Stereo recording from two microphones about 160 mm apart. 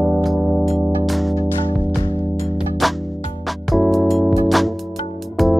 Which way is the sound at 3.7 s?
Centre (ahead or behind).